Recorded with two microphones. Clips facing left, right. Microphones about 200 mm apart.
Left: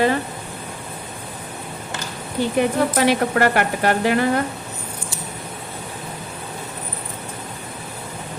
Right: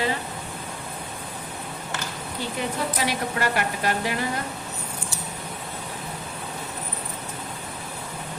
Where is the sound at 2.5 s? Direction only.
65° left (ahead or behind).